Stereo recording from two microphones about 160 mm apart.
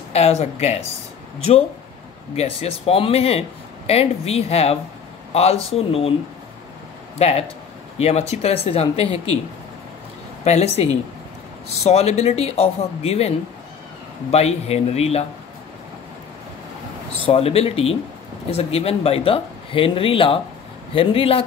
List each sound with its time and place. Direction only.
0.1 s speech: 40° left (ahead or behind)
2.3 s speech: 40° left (ahead or behind)
7.2 s speech: 40° left (ahead or behind)
10.4 s speech: 40° left (ahead or behind)
14.3 s speech: 40° left (ahead or behind)
17.3 s speech: 40° left (ahead or behind)